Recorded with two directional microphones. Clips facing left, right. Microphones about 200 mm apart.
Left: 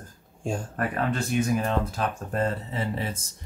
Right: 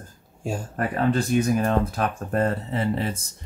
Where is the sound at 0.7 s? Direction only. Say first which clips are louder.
Right 7 dB; 35° right (ahead or behind).